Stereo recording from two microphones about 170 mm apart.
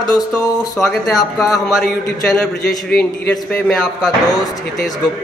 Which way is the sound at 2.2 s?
5° left (ahead or behind).